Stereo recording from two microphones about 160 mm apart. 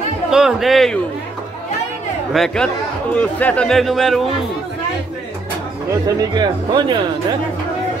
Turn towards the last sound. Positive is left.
turn(degrees=-25)  # may be behind; listen again after turning